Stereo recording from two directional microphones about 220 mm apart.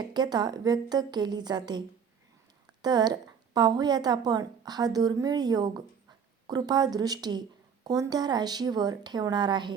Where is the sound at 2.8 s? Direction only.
20° right (ahead or behind).